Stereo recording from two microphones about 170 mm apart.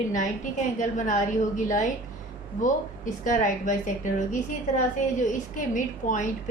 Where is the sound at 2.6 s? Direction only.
50° left (ahead or behind).